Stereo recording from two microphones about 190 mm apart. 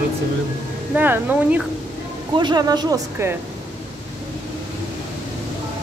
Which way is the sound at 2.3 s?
20° right (ahead or behind).